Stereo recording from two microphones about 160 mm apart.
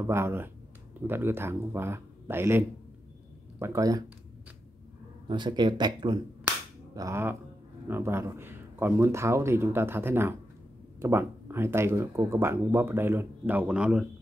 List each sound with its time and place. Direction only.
0.0 s speech: 15° right (ahead or behind)
5.3 s speech: 30° right (ahead or behind)
6.4 s cap gun: 20° right (ahead or behind)
7.9 s speech: 15° right (ahead or behind)